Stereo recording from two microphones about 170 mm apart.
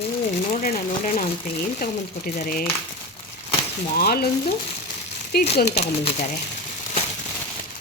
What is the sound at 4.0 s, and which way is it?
Speech, 65° left (ahead or behind).